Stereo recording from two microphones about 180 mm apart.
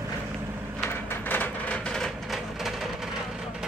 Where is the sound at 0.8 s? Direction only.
10° left (ahead or behind).